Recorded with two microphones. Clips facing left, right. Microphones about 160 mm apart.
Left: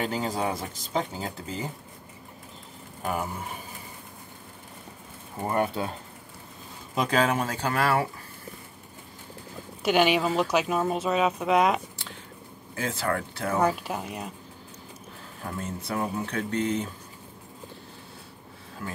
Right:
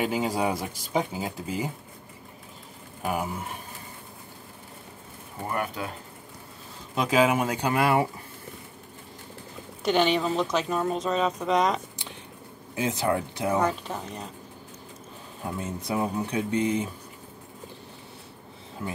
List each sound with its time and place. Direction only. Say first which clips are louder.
0.0 s speech: right 2 dB; 10° right (ahead or behind)
3.0 s speech: right 1 dB; 5° right (ahead or behind)
5.5 s speech: left 4 dB; 30° left (ahead or behind)
7.0 s speech: right 2 dB; 5° right (ahead or behind)
9.8 s speech: left 1 dB; 10° left (ahead or behind)
12.7 s speech: right 3 dB; 20° right (ahead or behind)
13.6 s speech: left 1 dB; 10° left (ahead or behind)
15.4 s speech: right 2 dB; 15° right (ahead or behind)
18.8 s speech: right 3 dB; 20° right (ahead or behind)